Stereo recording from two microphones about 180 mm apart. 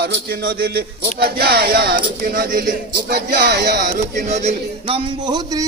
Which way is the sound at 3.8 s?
45° right (ahead or behind).